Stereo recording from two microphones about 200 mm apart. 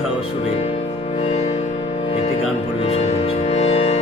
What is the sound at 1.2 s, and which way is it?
Music, 30° left (ahead or behind).